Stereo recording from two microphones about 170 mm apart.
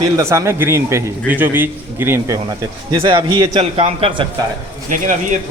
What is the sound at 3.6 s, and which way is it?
Speech, 35° right (ahead or behind).